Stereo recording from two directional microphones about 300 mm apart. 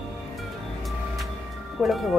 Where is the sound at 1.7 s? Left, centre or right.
Centre.